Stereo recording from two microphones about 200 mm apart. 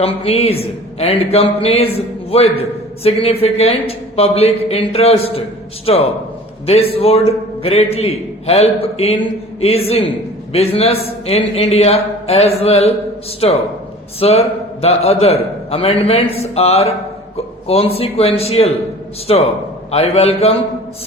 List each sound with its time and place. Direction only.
0.0 s a man's voice: 30° left (ahead or behind)